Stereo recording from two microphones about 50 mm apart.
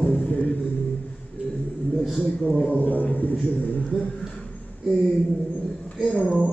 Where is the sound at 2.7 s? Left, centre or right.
Left.